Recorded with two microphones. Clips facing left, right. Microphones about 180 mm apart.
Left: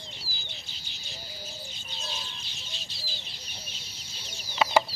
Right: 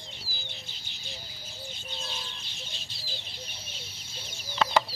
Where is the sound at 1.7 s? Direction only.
55° right (ahead or behind).